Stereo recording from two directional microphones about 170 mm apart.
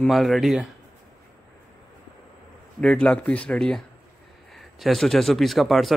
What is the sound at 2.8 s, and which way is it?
Speech, 5° left (ahead or behind).